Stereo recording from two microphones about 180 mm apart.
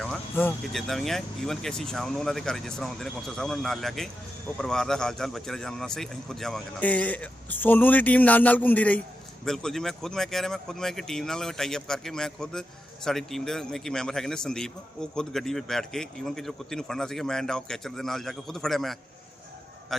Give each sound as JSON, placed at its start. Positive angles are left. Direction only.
{"t": 0.0, "sound": "a man's voice", "side_deg": 5}